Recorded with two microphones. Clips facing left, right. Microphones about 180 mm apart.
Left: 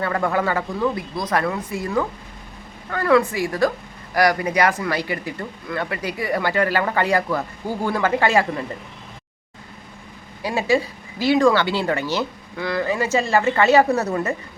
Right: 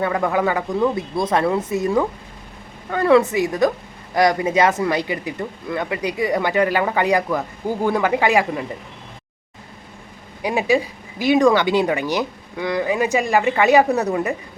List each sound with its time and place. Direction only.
0.0 s speech: 15° right (ahead or behind)
10.4 s speech: 15° right (ahead or behind)